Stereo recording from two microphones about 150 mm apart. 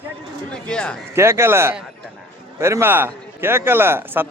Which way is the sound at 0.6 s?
5° left (ahead or behind).